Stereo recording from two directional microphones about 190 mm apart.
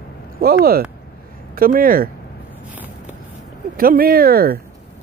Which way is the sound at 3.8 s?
50° right (ahead or behind).